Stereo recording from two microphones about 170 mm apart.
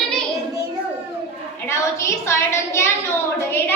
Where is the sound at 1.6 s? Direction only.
15° left (ahead or behind).